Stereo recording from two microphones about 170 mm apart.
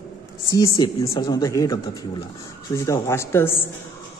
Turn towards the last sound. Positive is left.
turn(degrees=15)  # may be behind; listen again after turning